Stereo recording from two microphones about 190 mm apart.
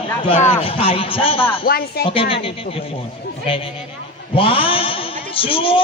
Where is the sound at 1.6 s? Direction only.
55° left (ahead or behind).